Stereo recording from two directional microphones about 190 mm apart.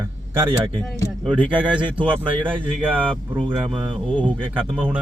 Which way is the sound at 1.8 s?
25° right (ahead or behind).